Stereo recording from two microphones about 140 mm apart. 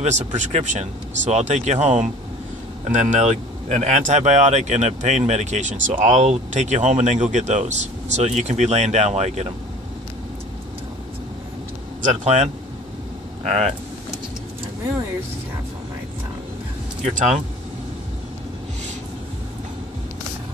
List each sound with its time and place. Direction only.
0.0 s speech: 55° right (ahead or behind)
12.0 s speech: 55° right (ahead or behind)
17.0 s speech: 60° right (ahead or behind)